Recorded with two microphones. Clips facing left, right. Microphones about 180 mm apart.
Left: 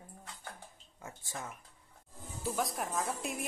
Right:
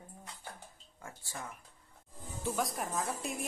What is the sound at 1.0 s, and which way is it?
Speech, 20° left (ahead or behind).